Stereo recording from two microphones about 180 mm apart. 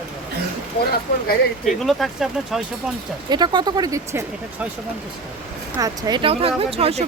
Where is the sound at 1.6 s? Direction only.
Centre (ahead or behind).